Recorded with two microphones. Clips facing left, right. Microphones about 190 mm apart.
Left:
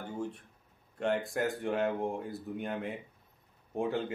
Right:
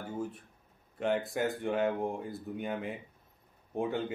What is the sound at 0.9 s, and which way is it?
Speech, centre (ahead or behind).